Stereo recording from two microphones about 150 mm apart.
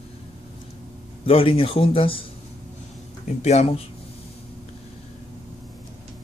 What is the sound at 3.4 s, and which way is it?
Speech, 45° left (ahead or behind).